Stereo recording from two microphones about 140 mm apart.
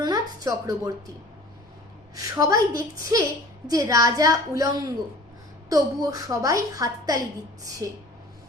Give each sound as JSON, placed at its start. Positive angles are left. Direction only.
{"t": 0.0, "sound": "a woman's voice", "side_deg": -25}
{"t": 2.1, "sound": "a woman's voice", "side_deg": -25}